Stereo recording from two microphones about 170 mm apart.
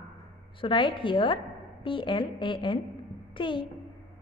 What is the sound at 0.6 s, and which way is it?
A woman's voice, 30° left (ahead or behind).